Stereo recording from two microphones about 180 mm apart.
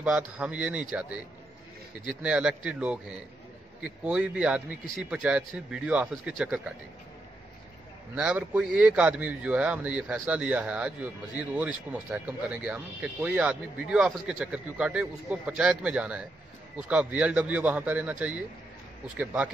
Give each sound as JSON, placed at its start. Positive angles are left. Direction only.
{"t": 0.0, "sound": "a man's voice", "side_deg": -5}
{"t": 2.0, "sound": "a man's voice", "side_deg": -5}
{"t": 8.1, "sound": "a man's voice", "side_deg": -10}